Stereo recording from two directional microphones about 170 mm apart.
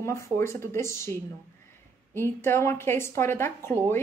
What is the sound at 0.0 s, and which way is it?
A woman's voice, 15° left (ahead or behind).